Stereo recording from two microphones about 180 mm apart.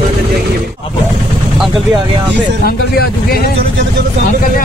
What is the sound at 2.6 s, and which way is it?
Speech, 60° left (ahead or behind).